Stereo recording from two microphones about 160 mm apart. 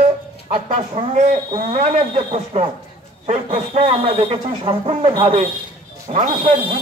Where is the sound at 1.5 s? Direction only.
35° right (ahead or behind).